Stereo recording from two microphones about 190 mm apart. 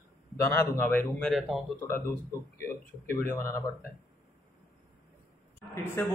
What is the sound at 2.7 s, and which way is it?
Speech, 15° left (ahead or behind).